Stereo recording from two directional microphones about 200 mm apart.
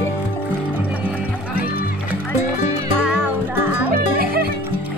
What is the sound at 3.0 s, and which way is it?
Music, 10° right (ahead or behind).